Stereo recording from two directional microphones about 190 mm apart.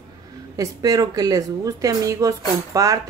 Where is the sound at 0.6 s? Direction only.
20° right (ahead or behind).